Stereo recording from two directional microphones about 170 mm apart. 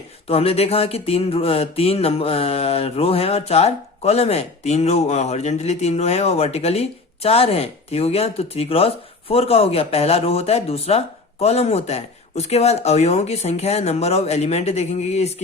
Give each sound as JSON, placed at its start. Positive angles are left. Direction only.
{"t": 0.3, "sound": "mantra", "side_deg": 35}